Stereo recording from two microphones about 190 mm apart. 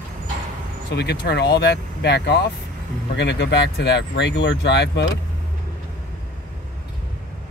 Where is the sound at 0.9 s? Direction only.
60° left (ahead or behind).